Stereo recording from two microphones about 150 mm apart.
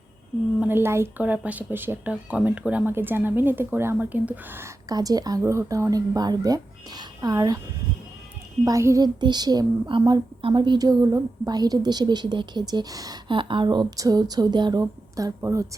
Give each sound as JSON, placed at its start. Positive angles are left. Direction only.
{"t": 0.6, "sound": "speech", "side_deg": -15}
{"t": 8.6, "sound": "a woman's voice", "side_deg": -20}